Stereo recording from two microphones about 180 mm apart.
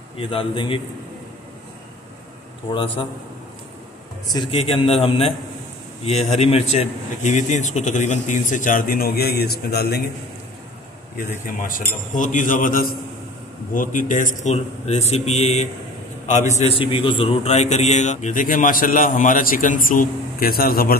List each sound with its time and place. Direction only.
0.2 s a man's voice: 30° left (ahead or behind)
2.7 s a man's voice: 30° left (ahead or behind)
4.3 s a man's voice: 30° left (ahead or behind); by 10.0 s 60° left (ahead or behind)
11.6 s a man's voice: 45° left (ahead or behind)